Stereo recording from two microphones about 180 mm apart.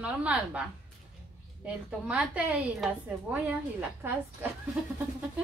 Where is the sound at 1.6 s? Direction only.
5° right (ahead or behind).